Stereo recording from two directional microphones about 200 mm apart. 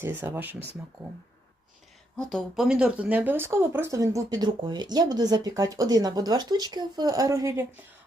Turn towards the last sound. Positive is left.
turn(degrees=-15)  # may be behind; listen again after turning